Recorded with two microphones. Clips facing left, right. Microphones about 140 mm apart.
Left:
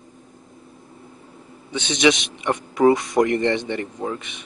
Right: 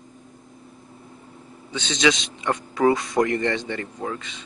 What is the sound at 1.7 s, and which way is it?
A man's voice, 20° left (ahead or behind).